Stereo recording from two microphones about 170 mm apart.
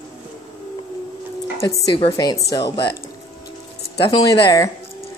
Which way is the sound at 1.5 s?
35° left (ahead or behind).